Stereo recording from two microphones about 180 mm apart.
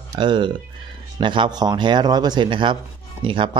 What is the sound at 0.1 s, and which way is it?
A man's voice, 25° right (ahead or behind).